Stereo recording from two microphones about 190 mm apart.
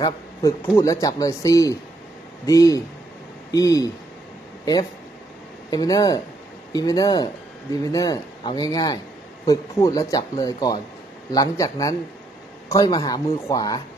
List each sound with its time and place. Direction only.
0.0 s speech: 15° left (ahead or behind)
5.7 s speech: 20° left (ahead or behind)